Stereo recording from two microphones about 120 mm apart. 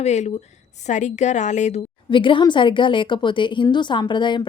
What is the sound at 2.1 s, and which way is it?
A woman's voice, 45° left (ahead or behind).